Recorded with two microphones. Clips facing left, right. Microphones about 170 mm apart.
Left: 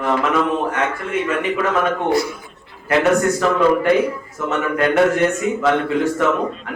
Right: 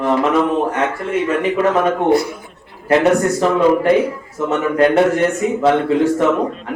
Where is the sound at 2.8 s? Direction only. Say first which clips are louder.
Right 2 dB; 30° right (ahead or behind).